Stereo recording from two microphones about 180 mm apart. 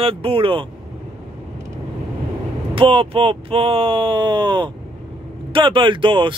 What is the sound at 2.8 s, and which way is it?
Speech, 30° right (ahead or behind).